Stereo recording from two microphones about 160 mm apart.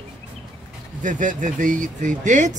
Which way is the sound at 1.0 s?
55° right (ahead or behind).